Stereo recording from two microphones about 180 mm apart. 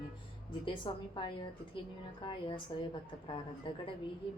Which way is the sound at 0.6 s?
25° left (ahead or behind).